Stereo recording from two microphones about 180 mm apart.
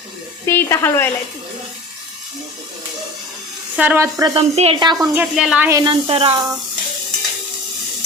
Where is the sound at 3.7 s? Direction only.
5° right (ahead or behind).